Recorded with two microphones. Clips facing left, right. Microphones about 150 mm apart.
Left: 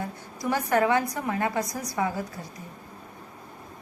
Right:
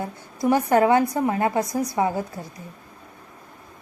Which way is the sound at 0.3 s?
25° right (ahead or behind).